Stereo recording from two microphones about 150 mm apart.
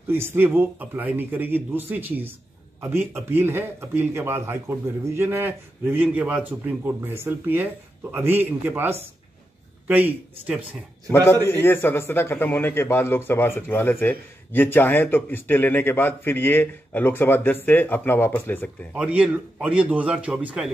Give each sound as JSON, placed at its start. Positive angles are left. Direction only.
{"t": 0.1, "sound": "a man's voice", "side_deg": -15}
{"t": 11.4, "sound": "a man's voice", "side_deg": 15}
{"t": 18.9, "sound": "a man's voice", "side_deg": -5}